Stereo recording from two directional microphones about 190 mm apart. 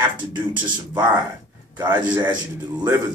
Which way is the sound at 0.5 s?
25° right (ahead or behind).